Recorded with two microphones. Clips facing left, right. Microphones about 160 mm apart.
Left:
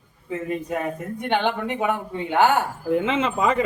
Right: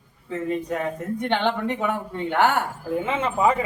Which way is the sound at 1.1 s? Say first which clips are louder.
Left 1 dB; 10° left (ahead or behind).